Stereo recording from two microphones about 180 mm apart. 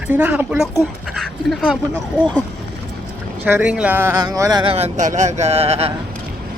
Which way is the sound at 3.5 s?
10° right (ahead or behind).